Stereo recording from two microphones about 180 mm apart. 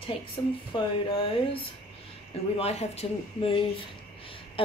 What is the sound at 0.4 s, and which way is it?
A woman's voice, 20° left (ahead or behind).